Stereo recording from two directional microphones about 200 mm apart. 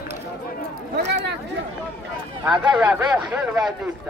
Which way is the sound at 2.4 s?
5° right (ahead or behind).